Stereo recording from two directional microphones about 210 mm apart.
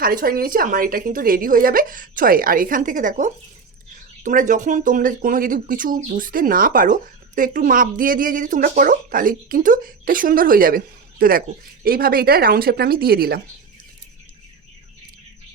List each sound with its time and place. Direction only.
0.0 s speech: 40° right (ahead or behind)